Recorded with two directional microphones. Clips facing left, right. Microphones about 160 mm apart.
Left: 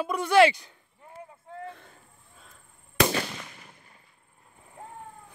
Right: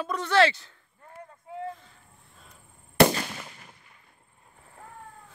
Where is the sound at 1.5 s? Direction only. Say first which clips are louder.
Right 4 dB; 5° right (ahead or behind).